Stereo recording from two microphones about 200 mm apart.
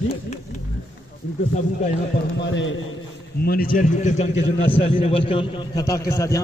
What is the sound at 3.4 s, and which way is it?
Speech, 45° left (ahead or behind).